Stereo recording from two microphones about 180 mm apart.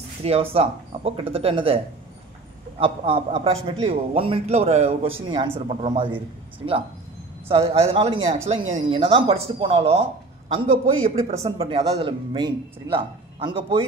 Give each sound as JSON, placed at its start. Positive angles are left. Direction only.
{"t": 0.2, "sound": "speech", "side_deg": -35}
{"t": 2.8, "sound": "speech", "side_deg": -30}
{"t": 5.2, "sound": "speech", "side_deg": -25}
{"t": 11.1, "sound": "speech", "side_deg": -30}